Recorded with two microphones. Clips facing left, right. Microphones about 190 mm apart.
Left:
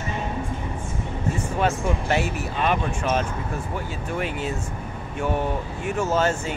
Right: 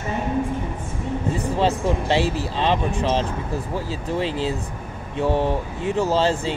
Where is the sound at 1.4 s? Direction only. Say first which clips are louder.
Right 2 dB; 35° right (ahead or behind).